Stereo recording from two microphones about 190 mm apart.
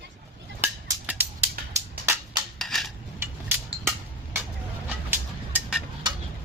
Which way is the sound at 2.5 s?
Centre (ahead or behind).